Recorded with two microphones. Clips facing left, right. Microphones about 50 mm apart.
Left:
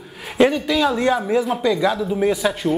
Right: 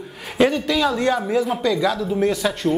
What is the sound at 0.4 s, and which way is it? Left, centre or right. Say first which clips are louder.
Speech: left 1 dB; centre.